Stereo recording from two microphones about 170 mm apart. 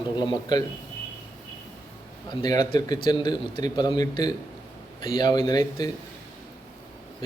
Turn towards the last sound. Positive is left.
turn(degrees=25)  # may be behind; listen again after turning